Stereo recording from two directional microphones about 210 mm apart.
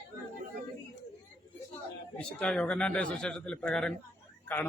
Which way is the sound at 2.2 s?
5° left (ahead or behind).